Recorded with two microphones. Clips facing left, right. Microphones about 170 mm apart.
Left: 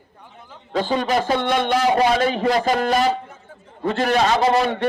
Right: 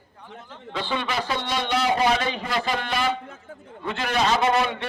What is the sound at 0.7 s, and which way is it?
A man's voice, 40° left (ahead or behind).